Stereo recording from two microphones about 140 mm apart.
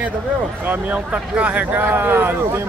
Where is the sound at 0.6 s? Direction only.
10° right (ahead or behind).